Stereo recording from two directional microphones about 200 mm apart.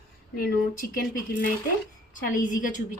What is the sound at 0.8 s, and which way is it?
Speech, 50° left (ahead or behind).